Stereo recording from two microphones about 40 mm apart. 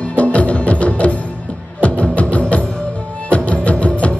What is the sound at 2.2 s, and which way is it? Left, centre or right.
Music, left.